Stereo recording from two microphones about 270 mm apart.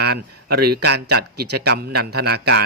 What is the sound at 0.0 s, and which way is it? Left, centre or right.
A man's voice, right.